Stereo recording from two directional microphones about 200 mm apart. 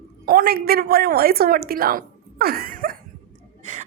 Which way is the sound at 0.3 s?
45° right (ahead or behind).